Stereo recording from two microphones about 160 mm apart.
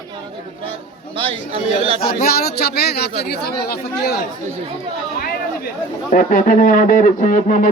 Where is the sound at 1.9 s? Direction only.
70° left (ahead or behind); by 4.2 s 85° left.